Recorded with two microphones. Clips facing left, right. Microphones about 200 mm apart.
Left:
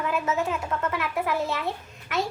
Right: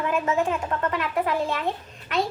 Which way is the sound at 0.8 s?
10° left (ahead or behind).